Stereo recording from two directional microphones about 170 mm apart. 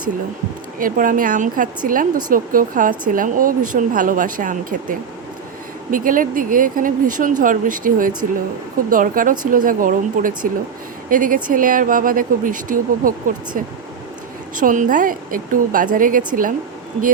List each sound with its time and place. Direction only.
0.8 s speech: 55° right (ahead or behind)
14.5 s speech: 50° right (ahead or behind)